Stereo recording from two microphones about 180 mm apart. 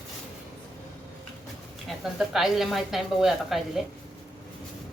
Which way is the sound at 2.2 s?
Centre (ahead or behind).